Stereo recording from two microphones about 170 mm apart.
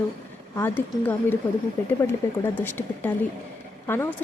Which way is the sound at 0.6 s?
10° left (ahead or behind).